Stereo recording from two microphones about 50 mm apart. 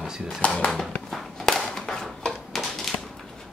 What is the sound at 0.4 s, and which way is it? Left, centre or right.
Speech, left.